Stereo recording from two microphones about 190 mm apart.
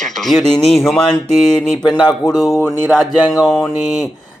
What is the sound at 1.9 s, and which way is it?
Speech, 20° left (ahead or behind).